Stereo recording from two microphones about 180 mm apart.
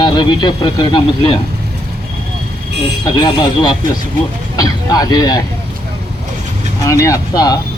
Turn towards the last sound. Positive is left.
turn(degrees=20)  # may be behind; listen again after turning